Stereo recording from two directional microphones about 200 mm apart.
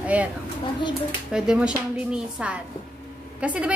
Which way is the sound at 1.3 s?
5° right (ahead or behind).